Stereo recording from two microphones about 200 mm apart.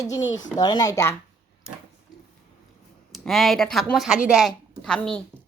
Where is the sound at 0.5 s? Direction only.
20° left (ahead or behind).